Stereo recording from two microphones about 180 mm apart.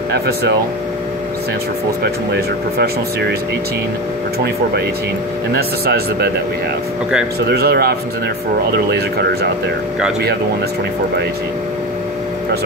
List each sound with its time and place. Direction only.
0.1 s speech: 65° right (ahead or behind)
2.0 s speech: 65° right (ahead or behind)
5.5 s speech: 60° right (ahead or behind)
7.3 s speech: 60° right (ahead or behind)